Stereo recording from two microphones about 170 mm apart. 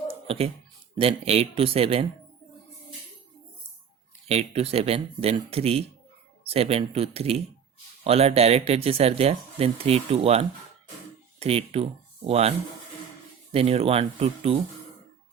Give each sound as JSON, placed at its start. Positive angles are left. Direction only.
{"t": 0.1, "sound": "a sound", "side_deg": -35}
{"t": 0.9, "sound": "speech", "side_deg": -35}
{"t": 4.3, "sound": "speech", "side_deg": -40}